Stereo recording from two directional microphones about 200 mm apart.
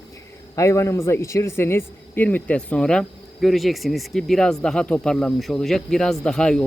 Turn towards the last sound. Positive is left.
turn(degrees=5)  # may be behind; listen again after turning